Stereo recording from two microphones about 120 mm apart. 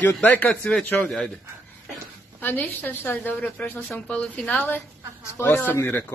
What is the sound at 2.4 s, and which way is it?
A woman's voice, 15° left (ahead or behind).